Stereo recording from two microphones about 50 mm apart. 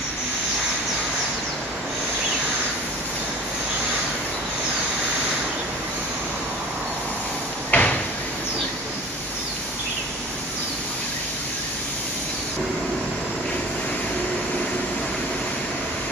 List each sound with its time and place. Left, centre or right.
7.7 s door: left